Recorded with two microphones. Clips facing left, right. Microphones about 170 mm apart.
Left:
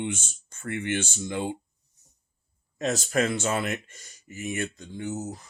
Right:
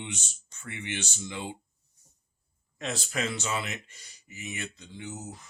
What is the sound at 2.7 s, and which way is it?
Speech, 40° left (ahead or behind).